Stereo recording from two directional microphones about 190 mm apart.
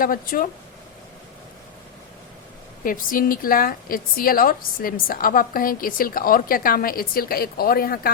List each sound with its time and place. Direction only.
0.0 s a woman's voice: 50° left (ahead or behind)
2.8 s a woman's voice: 45° left (ahead or behind)